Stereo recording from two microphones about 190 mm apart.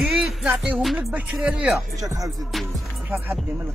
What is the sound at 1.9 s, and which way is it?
Music, 20° right (ahead or behind).